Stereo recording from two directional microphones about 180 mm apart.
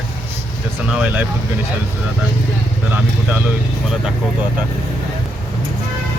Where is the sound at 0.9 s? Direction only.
5° right (ahead or behind).